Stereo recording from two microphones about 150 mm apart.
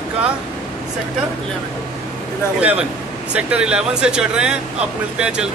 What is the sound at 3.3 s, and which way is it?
Speech, 5° right (ahead or behind).